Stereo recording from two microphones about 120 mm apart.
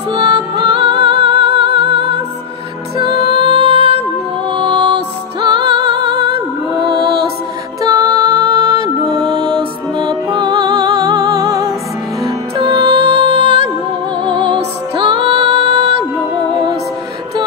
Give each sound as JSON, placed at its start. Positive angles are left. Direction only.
{"t": 0.1, "sound": "music", "side_deg": -50}
{"t": 4.5, "sound": "music", "side_deg": -40}
{"t": 7.8, "sound": "music", "side_deg": -30}
{"t": 12.6, "sound": "music", "side_deg": -50}
{"t": 14.2, "sound": "music", "side_deg": -40}